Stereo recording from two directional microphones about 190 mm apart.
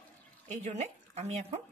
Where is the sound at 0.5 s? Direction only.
35° right (ahead or behind).